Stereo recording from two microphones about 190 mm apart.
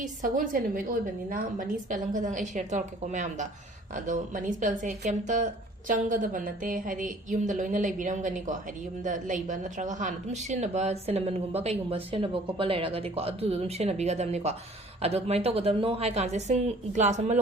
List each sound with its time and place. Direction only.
0.0 s a woman's voice: 45° right (ahead or behind)